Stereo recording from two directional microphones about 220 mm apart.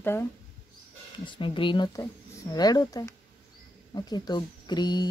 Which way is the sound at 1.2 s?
20° left (ahead or behind).